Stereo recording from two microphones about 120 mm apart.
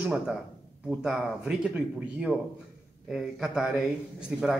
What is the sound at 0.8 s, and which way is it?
A man's voice, 5° right (ahead or behind).